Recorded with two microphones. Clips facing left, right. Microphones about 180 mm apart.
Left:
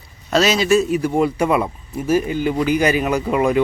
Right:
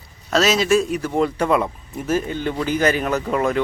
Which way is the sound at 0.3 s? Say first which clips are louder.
Left 1 dB; centre (ahead or behind).